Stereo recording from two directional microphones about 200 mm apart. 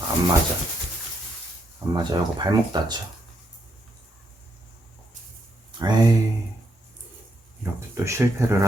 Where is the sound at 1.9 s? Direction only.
20° right (ahead or behind).